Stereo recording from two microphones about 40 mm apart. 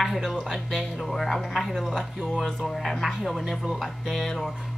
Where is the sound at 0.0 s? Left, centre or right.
Centre.